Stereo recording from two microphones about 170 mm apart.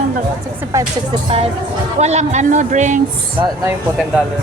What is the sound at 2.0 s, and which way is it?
Speech, 40° right (ahead or behind).